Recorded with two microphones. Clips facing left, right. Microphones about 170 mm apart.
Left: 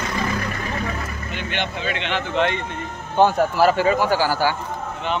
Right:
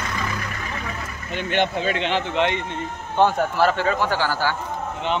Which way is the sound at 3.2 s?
5° left (ahead or behind).